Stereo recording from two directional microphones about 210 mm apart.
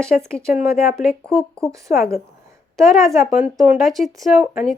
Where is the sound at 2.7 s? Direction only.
Centre (ahead or behind).